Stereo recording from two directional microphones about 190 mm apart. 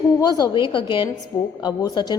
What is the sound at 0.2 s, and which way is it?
A woman's voice, 20° left (ahead or behind).